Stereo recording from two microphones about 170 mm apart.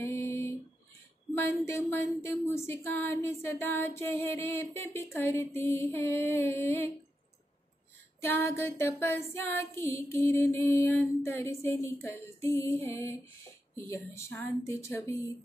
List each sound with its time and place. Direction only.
0.0 s music: 15° left (ahead or behind)
1.3 s speech: 10° left (ahead or behind)
8.2 s speech: 15° left (ahead or behind)